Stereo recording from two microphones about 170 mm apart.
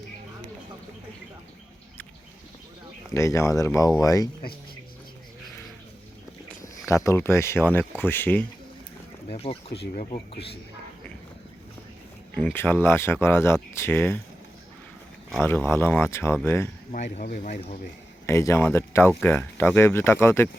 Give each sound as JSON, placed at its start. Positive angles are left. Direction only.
{"t": 3.2, "sound": "speech", "side_deg": 15}
{"t": 6.6, "sound": "speech", "side_deg": 20}
{"t": 9.3, "sound": "speech", "side_deg": 35}
{"t": 12.5, "sound": "speech", "side_deg": 10}
{"t": 15.4, "sound": "speech", "side_deg": 15}
{"t": 16.9, "sound": "speech", "side_deg": 45}
{"t": 18.3, "sound": "speech", "side_deg": 15}